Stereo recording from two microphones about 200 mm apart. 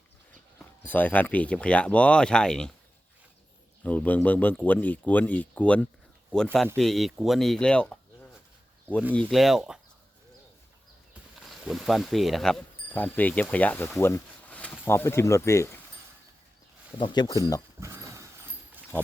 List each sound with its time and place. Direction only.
0.9 s speech: 10° left (ahead or behind)
3.8 s speech: 10° left (ahead or behind)
9.1 s speech: centre (ahead or behind)
11.3 s speech: centre (ahead or behind)
17.0 s speech: 20° left (ahead or behind)
17.7 s a sound: 15° right (ahead or behind)